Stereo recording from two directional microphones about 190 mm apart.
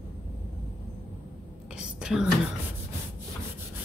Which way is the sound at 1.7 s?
5° right (ahead or behind).